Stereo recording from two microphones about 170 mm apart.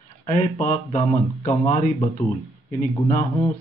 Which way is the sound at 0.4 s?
45° left (ahead or behind).